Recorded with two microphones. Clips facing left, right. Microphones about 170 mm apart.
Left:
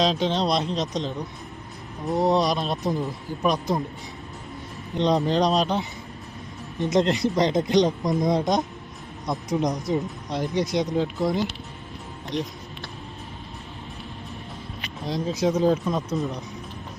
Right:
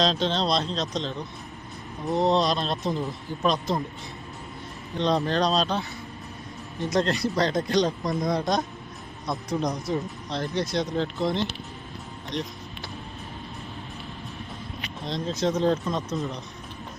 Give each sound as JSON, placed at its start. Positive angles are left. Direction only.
{"t": 0.0, "sound": "speech", "side_deg": 15}
{"t": 4.9, "sound": "speech", "side_deg": 15}
{"t": 11.2, "sound": "speech", "side_deg": 0}
{"t": 15.0, "sound": "speech", "side_deg": 10}